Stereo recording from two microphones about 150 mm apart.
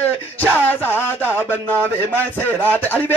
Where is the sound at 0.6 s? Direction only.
15° left (ahead or behind).